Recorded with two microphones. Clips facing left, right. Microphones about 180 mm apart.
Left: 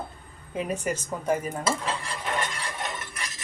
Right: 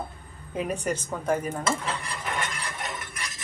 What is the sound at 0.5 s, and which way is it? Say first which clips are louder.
Speech: even; 10° left (ahead or behind).